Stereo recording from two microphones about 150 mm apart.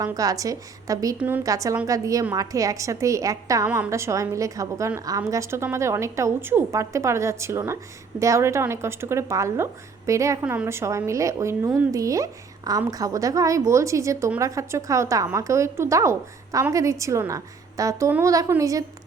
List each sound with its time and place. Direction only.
0.0 s a woman's voice: 25° right (ahead or behind)